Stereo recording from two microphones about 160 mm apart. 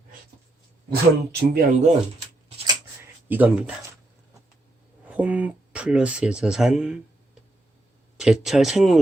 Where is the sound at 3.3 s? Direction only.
10° right (ahead or behind).